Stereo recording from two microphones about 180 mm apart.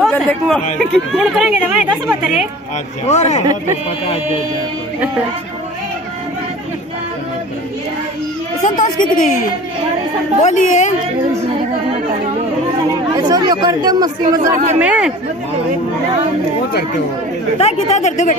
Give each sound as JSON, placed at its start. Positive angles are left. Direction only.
{"t": 0.0, "sound": "speech", "side_deg": 5}
{"t": 3.1, "sound": "speech", "side_deg": 40}
{"t": 8.6, "sound": "a sound", "side_deg": 45}
{"t": 10.4, "sound": "a woman's voice", "side_deg": 45}
{"t": 13.1, "sound": "speech", "side_deg": -20}
{"t": 14.8, "sound": "speech", "side_deg": -5}
{"t": 17.6, "sound": "speech", "side_deg": 35}